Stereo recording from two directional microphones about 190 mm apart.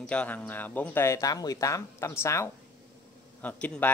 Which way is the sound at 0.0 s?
5° left (ahead or behind).